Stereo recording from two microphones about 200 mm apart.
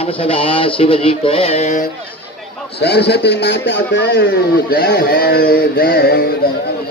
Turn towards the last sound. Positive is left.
turn(degrees=50)  # may be behind; listen again after turning